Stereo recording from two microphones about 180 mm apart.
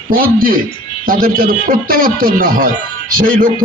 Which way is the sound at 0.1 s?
50° right (ahead or behind).